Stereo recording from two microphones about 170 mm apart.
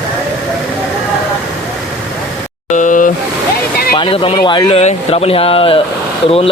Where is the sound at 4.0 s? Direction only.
30° left (ahead or behind).